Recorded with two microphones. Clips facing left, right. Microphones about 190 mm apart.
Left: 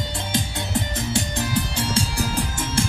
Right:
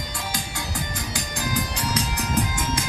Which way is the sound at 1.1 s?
25° left (ahead or behind).